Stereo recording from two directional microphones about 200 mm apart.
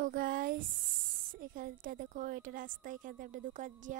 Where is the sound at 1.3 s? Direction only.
45° right (ahead or behind).